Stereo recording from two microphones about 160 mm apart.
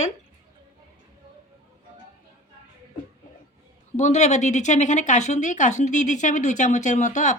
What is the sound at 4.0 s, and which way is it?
Speech, 45° left (ahead or behind).